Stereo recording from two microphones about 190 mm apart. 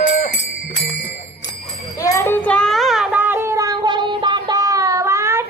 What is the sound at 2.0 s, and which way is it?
Child singing, 15° left (ahead or behind).